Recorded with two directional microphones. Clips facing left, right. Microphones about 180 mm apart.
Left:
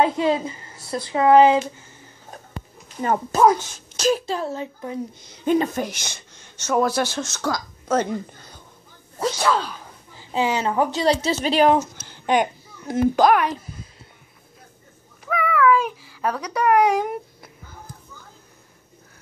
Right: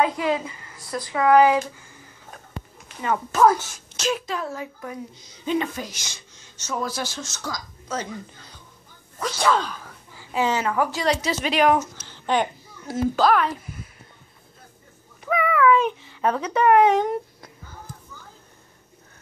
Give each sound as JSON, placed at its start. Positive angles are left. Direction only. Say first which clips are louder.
{"t": 0.0, "sound": "speech", "louder": "left 3 dB", "side_deg": 30}
{"t": 3.0, "sound": "a child's voice", "louder": "left 3 dB", "side_deg": 40}
{"t": 3.3, "sound": "speech", "louder": "left 1 dB", "side_deg": 15}
{"t": 3.9, "sound": "a child's voice", "louder": "left 5 dB", "side_deg": 35}
{"t": 5.2, "sound": "speech", "louder": "left 5 dB", "side_deg": 55}
{"t": 9.4, "sound": "speech", "louder": "right 2 dB", "side_deg": 5}
{"t": 9.8, "sound": "a woman's voice", "louder": "even", "side_deg": 20}
{"t": 12.3, "sound": "a child's voice", "louder": "left 3 dB", "side_deg": 15}
{"t": 15.2, "sound": "speech", "louder": "even", "side_deg": 0}